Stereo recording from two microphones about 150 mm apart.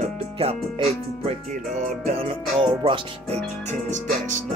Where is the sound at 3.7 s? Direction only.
55° right (ahead or behind).